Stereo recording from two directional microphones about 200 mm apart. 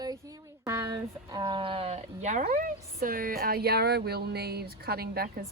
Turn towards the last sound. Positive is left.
turn(degrees=-50)  # may be behind; listen again after turning